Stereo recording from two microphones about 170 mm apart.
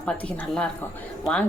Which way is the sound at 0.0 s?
5° left (ahead or behind).